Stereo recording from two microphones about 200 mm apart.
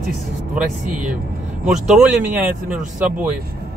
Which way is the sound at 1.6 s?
5° right (ahead or behind).